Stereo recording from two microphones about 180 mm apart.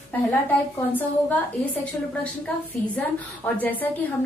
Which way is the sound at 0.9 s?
10° left (ahead or behind).